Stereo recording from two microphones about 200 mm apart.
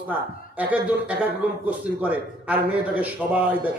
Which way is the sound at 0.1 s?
5° right (ahead or behind).